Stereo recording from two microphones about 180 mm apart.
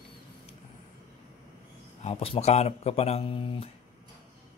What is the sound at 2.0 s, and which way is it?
A man's voice, 30° left (ahead or behind).